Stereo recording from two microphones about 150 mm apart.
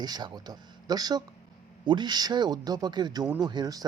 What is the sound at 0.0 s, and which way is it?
Speech, 25° right (ahead or behind).